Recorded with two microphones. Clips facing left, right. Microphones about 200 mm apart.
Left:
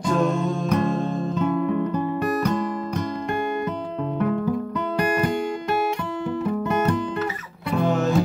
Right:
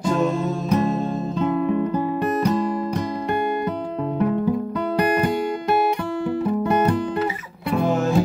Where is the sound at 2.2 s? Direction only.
30° right (ahead or behind).